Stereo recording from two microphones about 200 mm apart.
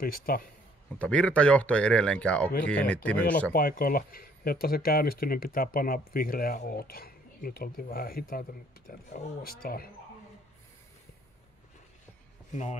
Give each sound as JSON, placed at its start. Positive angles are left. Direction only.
{"t": 0.0, "sound": "speech", "side_deg": 45}
{"t": 0.9, "sound": "speech", "side_deg": 5}
{"t": 3.5, "sound": "speech", "side_deg": 45}